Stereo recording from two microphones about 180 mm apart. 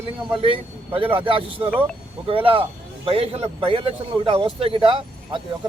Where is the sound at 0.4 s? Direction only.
30° right (ahead or behind).